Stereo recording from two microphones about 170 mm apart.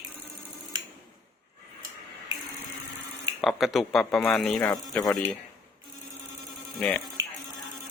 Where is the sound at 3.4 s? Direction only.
Centre (ahead or behind).